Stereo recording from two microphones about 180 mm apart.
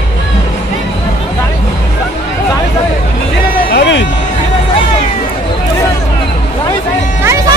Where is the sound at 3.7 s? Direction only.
80° left.